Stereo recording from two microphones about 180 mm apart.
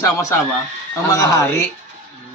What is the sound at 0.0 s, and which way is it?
Speech, 15° left (ahead or behind).